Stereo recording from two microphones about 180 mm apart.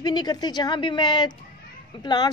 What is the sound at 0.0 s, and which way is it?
A woman's voice, 25° left (ahead or behind).